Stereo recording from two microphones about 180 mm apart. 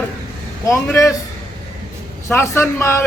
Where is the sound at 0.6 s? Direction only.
15° left (ahead or behind).